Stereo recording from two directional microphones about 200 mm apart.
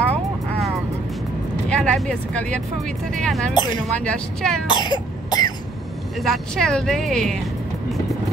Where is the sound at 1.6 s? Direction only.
5° left (ahead or behind).